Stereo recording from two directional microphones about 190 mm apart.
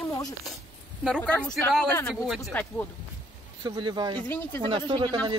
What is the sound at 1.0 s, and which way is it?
Speech, 5° left (ahead or behind).